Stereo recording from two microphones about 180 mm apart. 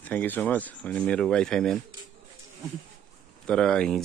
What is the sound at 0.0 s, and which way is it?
Speech, 10° left (ahead or behind).